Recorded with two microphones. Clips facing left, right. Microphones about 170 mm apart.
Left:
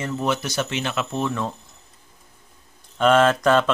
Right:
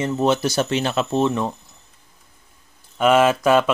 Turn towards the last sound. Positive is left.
turn(degrees=-10)  # may be behind; listen again after turning